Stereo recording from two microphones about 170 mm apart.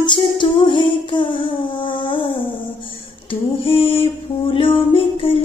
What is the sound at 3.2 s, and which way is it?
Female singing, 35° left (ahead or behind).